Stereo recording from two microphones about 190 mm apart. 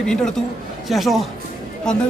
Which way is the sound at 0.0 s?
5° left (ahead or behind).